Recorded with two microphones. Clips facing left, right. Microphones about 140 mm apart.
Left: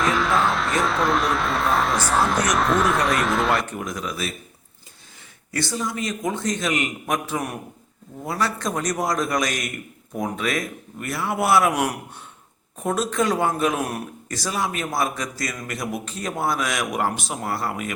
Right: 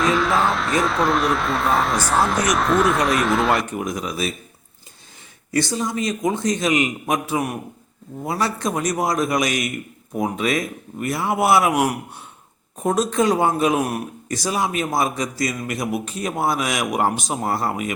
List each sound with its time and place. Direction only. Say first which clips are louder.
0.0 s speech: right 2 dB; centre (ahead or behind)
3.7 s speech: right 4 dB; 15° right (ahead or behind)
5.5 s speech: right 4 dB; 20° right (ahead or behind)
17.3 s speech: right 4 dB; 25° right (ahead or behind)